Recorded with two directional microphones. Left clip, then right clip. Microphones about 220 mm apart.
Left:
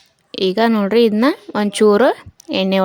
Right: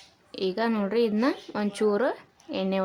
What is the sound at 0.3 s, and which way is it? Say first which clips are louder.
A woman's voice: left 12 dB; 35° left (ahead or behind).